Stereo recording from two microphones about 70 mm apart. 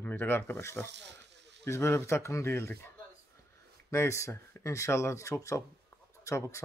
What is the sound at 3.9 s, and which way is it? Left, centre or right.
Speech, left.